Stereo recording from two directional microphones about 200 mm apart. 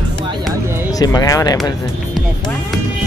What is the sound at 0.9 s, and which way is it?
Speech, 20° left (ahead or behind).